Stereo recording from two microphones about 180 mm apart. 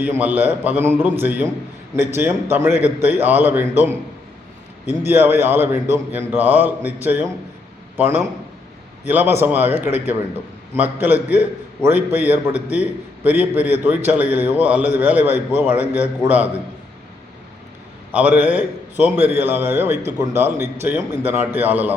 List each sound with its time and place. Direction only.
0.0 s a man's voice: 10° right (ahead or behind)
18.1 s a man's voice: 10° right (ahead or behind)